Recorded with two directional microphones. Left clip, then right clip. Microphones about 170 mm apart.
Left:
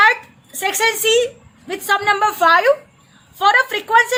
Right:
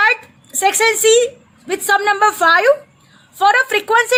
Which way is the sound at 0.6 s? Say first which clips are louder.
Right 4 dB; 25° right (ahead or behind).